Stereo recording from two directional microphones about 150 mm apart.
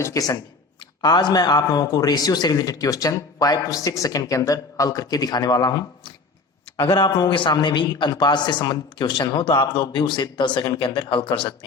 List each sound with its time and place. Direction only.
0.0 s a man's voice: 25° left (ahead or behind)